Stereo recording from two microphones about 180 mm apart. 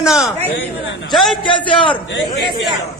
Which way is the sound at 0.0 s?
Centre (ahead or behind).